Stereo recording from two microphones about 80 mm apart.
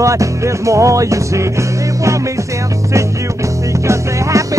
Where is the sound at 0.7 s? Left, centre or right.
Right.